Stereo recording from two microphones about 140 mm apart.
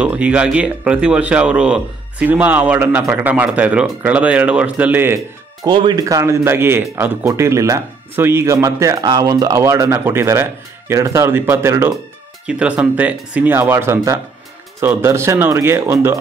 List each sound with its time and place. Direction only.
0.0 s speech: 10° right (ahead or behind)
5.7 s speech: 35° right (ahead or behind); by 11.9 s 20° right (ahead or behind)
12.4 s speech: 10° right (ahead or behind)